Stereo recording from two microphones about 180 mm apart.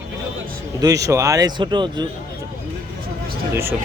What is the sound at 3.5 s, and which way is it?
Speech, 15° right (ahead or behind).